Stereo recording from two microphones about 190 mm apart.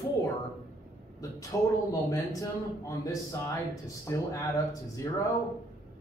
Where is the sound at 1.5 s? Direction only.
20° left (ahead or behind).